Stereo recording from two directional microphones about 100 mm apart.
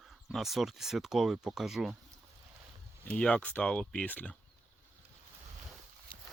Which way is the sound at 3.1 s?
10° left (ahead or behind).